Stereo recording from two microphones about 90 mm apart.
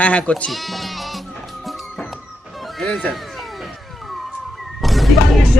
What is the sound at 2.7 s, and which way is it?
Speech, 5° left (ahead or behind).